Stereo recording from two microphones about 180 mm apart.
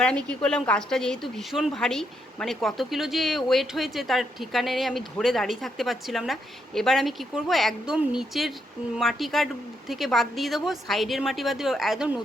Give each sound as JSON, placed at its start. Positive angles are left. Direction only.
{"t": 0.0, "sound": "a woman's voice", "side_deg": 5}